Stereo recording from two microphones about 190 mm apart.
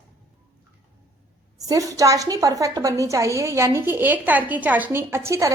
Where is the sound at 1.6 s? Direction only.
20° right (ahead or behind).